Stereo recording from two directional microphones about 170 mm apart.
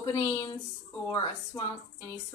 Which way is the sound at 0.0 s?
20° left (ahead or behind).